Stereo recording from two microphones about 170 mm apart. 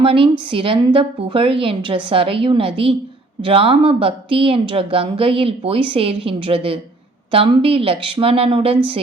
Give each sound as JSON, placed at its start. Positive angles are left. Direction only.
{"t": 0.0, "sound": "a woman's voice", "side_deg": -30}